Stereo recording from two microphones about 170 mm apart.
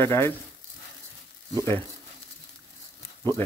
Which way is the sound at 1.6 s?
15° left (ahead or behind).